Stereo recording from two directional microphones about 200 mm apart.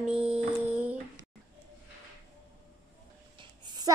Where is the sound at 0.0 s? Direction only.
5° right (ahead or behind).